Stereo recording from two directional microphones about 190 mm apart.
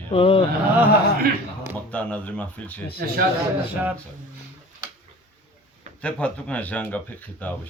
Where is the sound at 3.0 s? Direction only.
55° right (ahead or behind).